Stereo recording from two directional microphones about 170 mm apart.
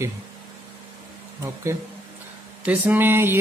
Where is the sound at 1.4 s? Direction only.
15° right (ahead or behind).